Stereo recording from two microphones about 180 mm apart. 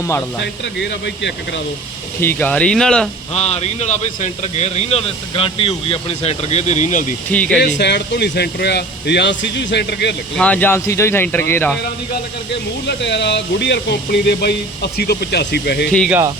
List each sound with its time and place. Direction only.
0.6 s speech: 75° left (ahead or behind)
2.2 s speech: 10° left (ahead or behind)
3.3 s speech: 35° left (ahead or behind)
7.3 s speech: 5° left (ahead or behind)
7.8 s speech: 70° left (ahead or behind)
10.3 s speech: 5° left (ahead or behind)
13.0 s speech: 75° left (ahead or behind)
16.0 s speech: 10° right (ahead or behind)